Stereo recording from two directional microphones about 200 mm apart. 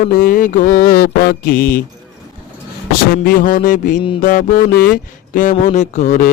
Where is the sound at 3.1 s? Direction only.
45° left (ahead or behind).